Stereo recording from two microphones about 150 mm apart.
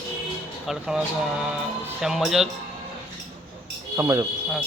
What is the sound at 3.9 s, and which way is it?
Speech, 20° right (ahead or behind).